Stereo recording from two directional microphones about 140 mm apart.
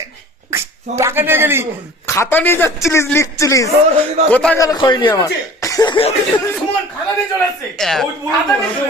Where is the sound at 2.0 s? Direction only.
20° left (ahead or behind).